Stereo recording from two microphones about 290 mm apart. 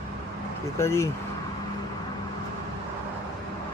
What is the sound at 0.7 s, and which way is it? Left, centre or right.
Speech, centre.